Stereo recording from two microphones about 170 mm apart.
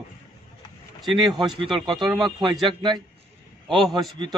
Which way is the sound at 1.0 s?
Centre (ahead or behind).